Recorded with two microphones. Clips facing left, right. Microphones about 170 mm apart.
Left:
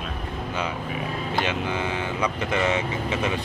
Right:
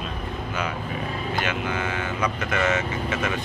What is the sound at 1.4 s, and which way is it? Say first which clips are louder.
Speech: left 1 dB; 25° left (ahead or behind).